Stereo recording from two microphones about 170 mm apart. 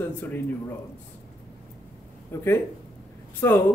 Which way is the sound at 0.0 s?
10° left (ahead or behind).